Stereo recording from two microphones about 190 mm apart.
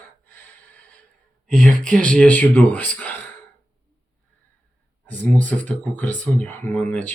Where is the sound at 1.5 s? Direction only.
45° right (ahead or behind).